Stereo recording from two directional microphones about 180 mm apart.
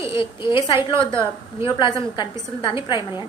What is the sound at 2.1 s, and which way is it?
Speech, 25° left (ahead or behind).